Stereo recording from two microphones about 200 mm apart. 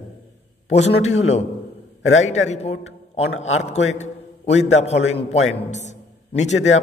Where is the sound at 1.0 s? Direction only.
35° left (ahead or behind).